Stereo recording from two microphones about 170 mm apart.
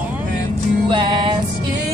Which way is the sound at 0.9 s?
30° right (ahead or behind).